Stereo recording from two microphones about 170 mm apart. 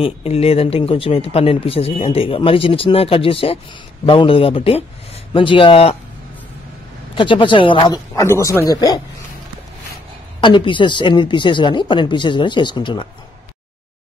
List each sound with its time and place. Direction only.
0.0 s speech: 35° left (ahead or behind)
7.2 s speech: 30° left (ahead or behind)
10.4 s speech: 30° left (ahead or behind)